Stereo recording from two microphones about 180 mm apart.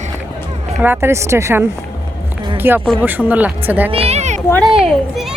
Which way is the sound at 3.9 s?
35° right (ahead or behind).